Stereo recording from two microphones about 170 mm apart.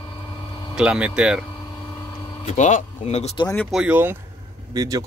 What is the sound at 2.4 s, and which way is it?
Speech, 45° left (ahead or behind).